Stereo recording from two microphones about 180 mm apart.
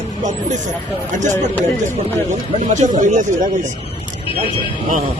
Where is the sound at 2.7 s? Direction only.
40° right (ahead or behind).